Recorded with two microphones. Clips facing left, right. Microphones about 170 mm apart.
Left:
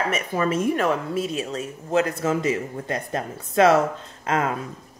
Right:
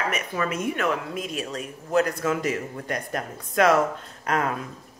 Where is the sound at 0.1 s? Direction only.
30° left (ahead or behind).